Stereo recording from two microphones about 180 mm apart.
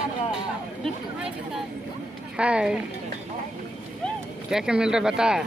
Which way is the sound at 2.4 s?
5° right (ahead or behind).